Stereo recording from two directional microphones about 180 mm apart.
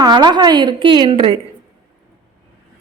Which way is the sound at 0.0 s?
25° right (ahead or behind).